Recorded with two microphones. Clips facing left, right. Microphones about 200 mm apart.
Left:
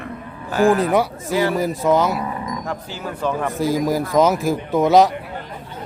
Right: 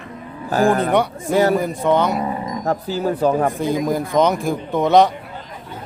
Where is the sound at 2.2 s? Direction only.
35° right (ahead or behind).